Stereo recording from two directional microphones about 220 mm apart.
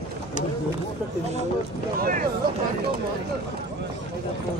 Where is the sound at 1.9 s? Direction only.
40° right (ahead or behind).